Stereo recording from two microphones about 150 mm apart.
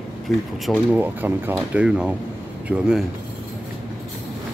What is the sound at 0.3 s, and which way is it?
Speech, centre (ahead or behind).